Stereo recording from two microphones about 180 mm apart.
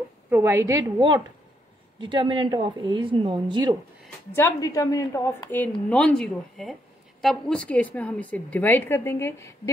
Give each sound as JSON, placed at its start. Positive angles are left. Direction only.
{"t": 0.3, "sound": "a woman's voice", "side_deg": -15}
{"t": 4.3, "sound": "a woman's voice", "side_deg": 15}